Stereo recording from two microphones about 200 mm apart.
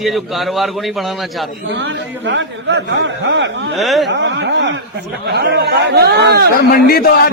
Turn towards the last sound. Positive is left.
turn(degrees=50)  # may be behind; listen again after turning